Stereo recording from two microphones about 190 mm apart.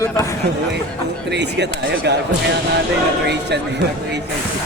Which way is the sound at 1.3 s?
65° right (ahead or behind).